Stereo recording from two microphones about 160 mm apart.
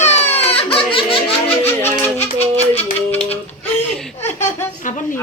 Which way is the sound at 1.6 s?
15° left (ahead or behind).